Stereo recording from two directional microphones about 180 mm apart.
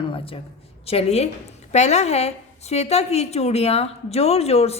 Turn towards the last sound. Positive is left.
turn(degrees=35)  # may be behind; listen again after turning